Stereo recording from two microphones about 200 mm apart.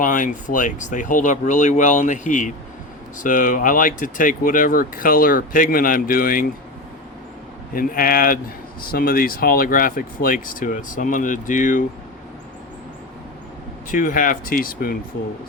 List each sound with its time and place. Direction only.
0.0 s speech: 40° left (ahead or behind)
7.7 s speech: 45° left (ahead or behind)
13.9 s speech: 45° left (ahead or behind)